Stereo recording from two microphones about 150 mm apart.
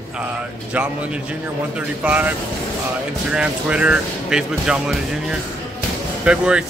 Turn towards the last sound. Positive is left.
turn(degrees=-5)  # may be behind; listen again after turning